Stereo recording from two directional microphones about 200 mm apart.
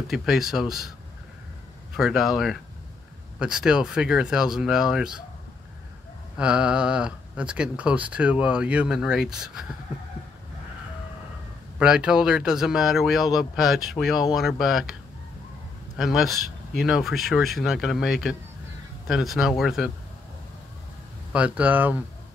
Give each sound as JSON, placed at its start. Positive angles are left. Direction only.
{"t": 0.1, "sound": "speech", "side_deg": 0}
{"t": 2.0, "sound": "speech", "side_deg": 0}
{"t": 6.3, "sound": "speech", "side_deg": -5}
{"t": 11.8, "sound": "speech", "side_deg": -5}
{"t": 16.0, "sound": "speech", "side_deg": 0}
{"t": 21.3, "sound": "speech", "side_deg": -5}